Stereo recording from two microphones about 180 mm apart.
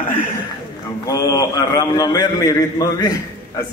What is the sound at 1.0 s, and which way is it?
A man's voice, 20° left (ahead or behind).